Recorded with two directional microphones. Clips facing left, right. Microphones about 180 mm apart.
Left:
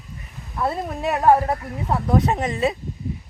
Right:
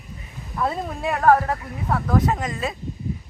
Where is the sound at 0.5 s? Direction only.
5° left (ahead or behind).